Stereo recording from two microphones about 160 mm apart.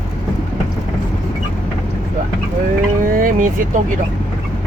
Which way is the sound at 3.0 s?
60° right (ahead or behind).